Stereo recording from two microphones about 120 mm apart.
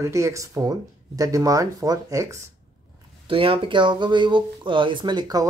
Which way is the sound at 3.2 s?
45° right (ahead or behind).